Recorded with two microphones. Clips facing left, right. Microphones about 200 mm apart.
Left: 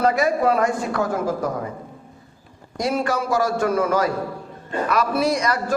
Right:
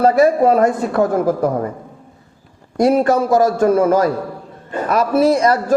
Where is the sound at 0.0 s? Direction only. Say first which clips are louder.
Right 7 dB; 30° right (ahead or behind).